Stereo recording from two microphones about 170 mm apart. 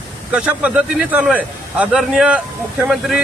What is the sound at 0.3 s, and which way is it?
Speech, 5° right (ahead or behind).